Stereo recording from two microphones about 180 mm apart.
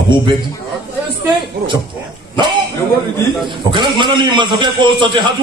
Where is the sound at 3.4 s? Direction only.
25° right (ahead or behind).